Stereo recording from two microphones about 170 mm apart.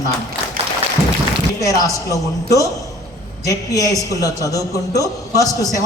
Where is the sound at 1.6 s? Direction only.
20° left (ahead or behind).